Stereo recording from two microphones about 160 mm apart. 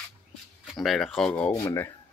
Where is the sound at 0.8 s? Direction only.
Centre (ahead or behind).